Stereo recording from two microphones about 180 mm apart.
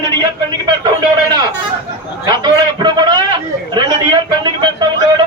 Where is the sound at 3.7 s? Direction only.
25° right (ahead or behind).